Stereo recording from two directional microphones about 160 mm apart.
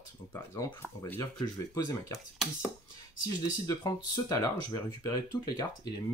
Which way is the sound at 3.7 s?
25° left (ahead or behind).